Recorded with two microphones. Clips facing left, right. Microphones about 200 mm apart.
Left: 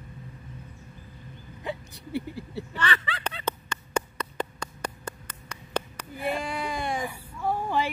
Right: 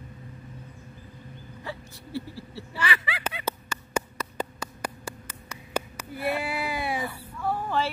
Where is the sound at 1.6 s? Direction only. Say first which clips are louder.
Left 4 dB; 20° left (ahead or behind).